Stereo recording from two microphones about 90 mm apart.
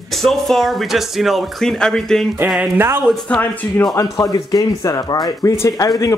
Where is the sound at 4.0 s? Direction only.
40° left (ahead or behind).